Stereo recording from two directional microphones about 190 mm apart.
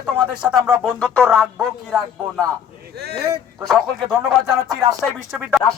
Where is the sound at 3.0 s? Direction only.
60° right (ahead or behind).